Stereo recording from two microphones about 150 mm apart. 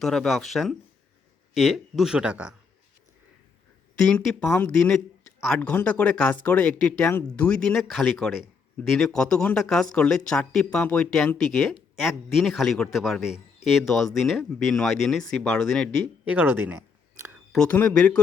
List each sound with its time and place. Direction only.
0.0 s speech: centre (ahead or behind)
3.9 s speech: 5° left (ahead or behind)
4.4 s speech: 15° left (ahead or behind)
16.2 s speech: 10° right (ahead or behind)
17.5 s speech: 10° left (ahead or behind)